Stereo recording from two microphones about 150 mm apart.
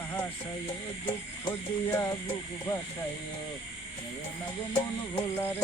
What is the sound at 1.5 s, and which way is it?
Music, 20° left (ahead or behind).